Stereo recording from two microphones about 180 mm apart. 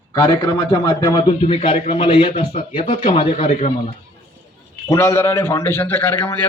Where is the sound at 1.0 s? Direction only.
25° left (ahead or behind).